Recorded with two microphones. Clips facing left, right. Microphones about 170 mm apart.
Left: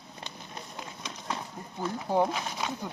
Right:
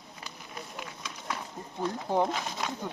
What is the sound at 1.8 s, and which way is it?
Speech, 10° left (ahead or behind).